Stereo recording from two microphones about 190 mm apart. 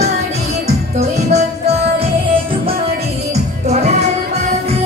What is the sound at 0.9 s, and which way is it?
Music, 35° right (ahead or behind).